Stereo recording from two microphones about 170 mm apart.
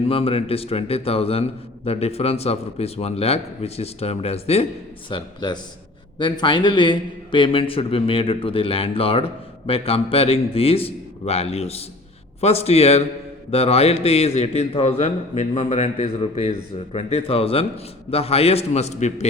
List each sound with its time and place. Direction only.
0.0 s a man's voice: 35° left (ahead or behind)
5.0 s a man's voice: 25° left (ahead or behind)